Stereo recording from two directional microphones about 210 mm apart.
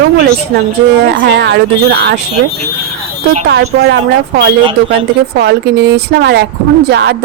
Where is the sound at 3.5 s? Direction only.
50° right (ahead or behind).